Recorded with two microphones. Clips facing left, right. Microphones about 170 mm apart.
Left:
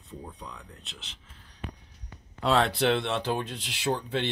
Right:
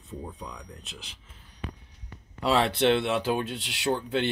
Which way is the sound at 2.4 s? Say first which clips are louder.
Right 1 dB; centre (ahead or behind).